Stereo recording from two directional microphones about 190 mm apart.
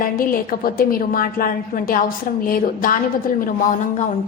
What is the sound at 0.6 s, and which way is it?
A woman's voice, 50° left (ahead or behind).